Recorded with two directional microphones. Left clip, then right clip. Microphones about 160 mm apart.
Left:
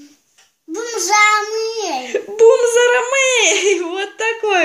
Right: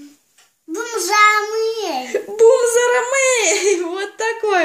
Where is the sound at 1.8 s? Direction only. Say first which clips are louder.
Left 1 dB; 5° left (ahead or behind).